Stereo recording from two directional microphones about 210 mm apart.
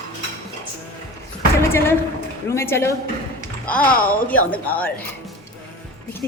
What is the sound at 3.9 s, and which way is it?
Speech, 40° left (ahead or behind).